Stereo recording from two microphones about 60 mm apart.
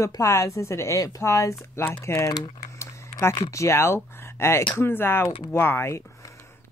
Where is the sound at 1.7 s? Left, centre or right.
Left.